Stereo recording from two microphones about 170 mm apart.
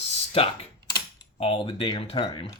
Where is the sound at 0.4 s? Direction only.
35° left (ahead or behind).